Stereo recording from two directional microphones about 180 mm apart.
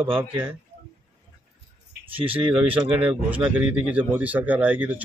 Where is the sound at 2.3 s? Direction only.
10° right (ahead or behind).